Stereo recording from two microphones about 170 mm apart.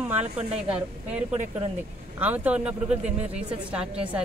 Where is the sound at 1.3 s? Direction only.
35° right (ahead or behind).